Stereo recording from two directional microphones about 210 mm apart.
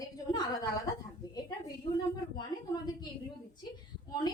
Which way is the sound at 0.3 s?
20° left (ahead or behind).